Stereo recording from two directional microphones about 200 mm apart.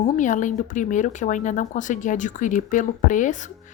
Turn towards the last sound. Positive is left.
turn(degrees=40)  # may be behind; listen again after turning